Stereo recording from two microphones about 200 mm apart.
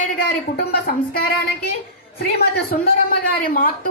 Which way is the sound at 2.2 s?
50° left (ahead or behind).